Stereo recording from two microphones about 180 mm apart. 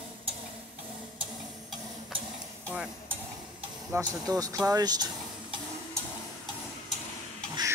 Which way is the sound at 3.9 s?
15° right (ahead or behind).